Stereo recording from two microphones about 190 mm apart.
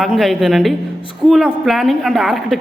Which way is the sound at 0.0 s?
Centre (ahead or behind).